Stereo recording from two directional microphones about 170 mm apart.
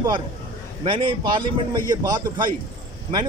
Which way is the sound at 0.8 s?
30° right (ahead or behind).